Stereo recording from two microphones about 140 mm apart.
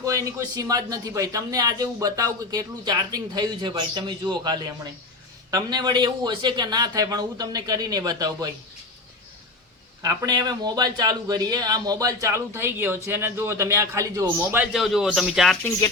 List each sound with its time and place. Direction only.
0.0 s speech: 25° right (ahead or behind)
10.0 s speech: 25° right (ahead or behind)
14.7 s speech: centre (ahead or behind)